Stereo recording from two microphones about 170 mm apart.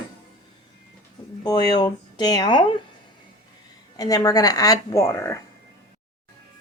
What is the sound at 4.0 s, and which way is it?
Speech, 20° left (ahead or behind).